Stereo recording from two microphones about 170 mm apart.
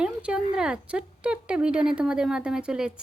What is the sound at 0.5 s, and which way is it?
Speech, 5° right (ahead or behind).